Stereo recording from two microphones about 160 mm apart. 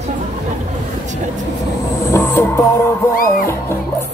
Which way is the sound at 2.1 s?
15° left (ahead or behind).